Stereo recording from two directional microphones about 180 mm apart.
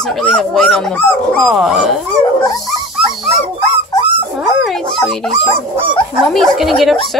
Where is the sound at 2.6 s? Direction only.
Centre (ahead or behind).